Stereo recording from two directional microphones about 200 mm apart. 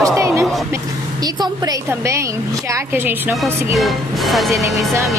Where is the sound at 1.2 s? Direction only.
20° right (ahead or behind); by 4.5 s centre (ahead or behind).